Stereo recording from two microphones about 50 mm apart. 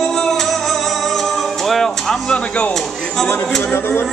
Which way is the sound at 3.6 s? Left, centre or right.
Left.